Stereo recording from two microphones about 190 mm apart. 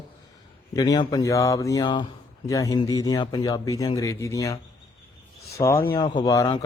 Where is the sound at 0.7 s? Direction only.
20° left (ahead or behind).